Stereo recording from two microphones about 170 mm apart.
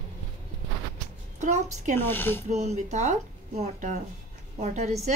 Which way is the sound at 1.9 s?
10° left (ahead or behind).